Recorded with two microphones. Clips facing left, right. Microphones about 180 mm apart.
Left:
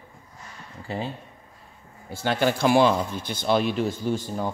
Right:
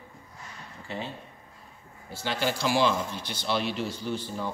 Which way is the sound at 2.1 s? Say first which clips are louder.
Left 6 dB; 50° left (ahead or behind).